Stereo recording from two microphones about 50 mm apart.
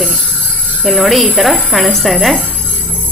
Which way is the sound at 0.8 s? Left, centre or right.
Centre.